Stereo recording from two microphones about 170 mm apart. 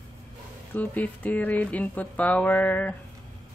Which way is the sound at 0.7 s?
10° left (ahead or behind).